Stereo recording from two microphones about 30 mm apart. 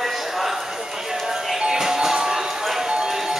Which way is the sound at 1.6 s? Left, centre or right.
Right.